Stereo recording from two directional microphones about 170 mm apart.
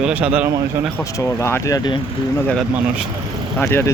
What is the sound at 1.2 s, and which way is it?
Speech, 15° left (ahead or behind).